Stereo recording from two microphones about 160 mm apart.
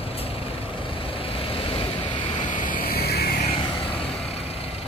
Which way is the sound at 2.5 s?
55° left (ahead or behind).